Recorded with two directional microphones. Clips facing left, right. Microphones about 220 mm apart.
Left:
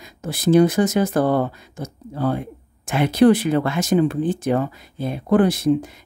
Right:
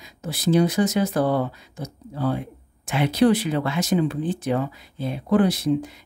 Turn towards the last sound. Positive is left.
turn(degrees=50)  # may be behind; listen again after turning